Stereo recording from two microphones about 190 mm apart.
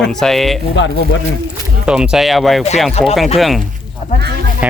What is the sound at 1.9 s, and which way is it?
Speech, 5° right (ahead or behind).